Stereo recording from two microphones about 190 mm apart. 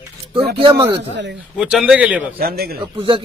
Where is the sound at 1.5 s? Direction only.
5° right (ahead or behind).